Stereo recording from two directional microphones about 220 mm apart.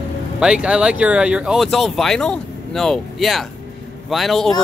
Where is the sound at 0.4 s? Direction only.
5° right (ahead or behind).